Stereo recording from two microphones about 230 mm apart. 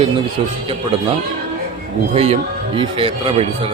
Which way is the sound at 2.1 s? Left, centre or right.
Right.